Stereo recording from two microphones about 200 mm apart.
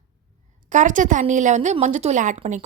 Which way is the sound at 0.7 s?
40° right (ahead or behind).